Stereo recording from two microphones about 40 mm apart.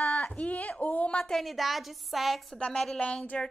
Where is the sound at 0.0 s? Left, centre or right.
Left.